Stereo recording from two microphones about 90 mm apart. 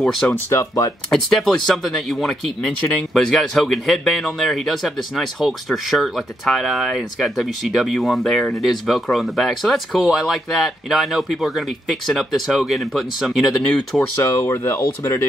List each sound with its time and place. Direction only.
0.0 s speech: 5° left (ahead or behind)
0.3 s speech: 30° left (ahead or behind)
1.1 s speech: 5° left (ahead or behind)
13.9 s speech: 30° left (ahead or behind)